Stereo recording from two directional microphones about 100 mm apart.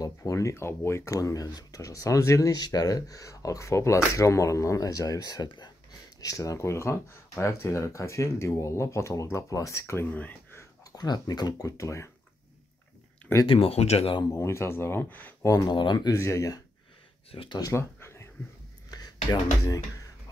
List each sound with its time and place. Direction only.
0.0 s speech: 30° left (ahead or behind)
6.2 s speech: 35° left (ahead or behind); by 10.6 s 15° left (ahead or behind)
10.6 s speech: 40° left (ahead or behind)
13.5 s speech: 75° left (ahead or behind)
14.3 s speech: 30° left (ahead or behind)
15.4 s speech: 40° left (ahead or behind)
16.1 s speech: 30° left (ahead or behind)
17.3 s speech: 65° left (ahead or behind)
17.6 s a sound: 30° left (ahead or behind)